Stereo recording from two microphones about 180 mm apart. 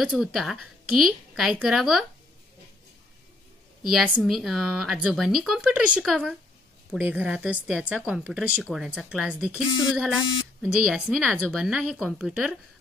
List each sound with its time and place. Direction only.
0.0 s speech: 5° right (ahead or behind)
3.9 s speech: 5° right (ahead or behind)